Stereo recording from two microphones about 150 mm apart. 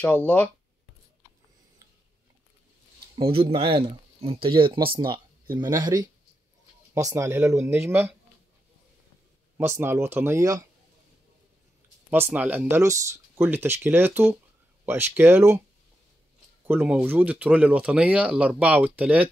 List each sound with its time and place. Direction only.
0.0 s speech: 10° left (ahead or behind)
3.3 s speech: 40° right (ahead or behind); by 8.1 s 15° right (ahead or behind)
9.6 s speech: 15° right (ahead or behind)
12.1 s speech: 10° right (ahead or behind)
16.6 s speech: 10° right (ahead or behind)